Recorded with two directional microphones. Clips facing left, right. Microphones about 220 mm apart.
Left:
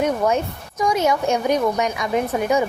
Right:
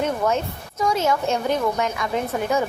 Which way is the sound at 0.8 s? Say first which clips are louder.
Left 2 dB; 15° left (ahead or behind).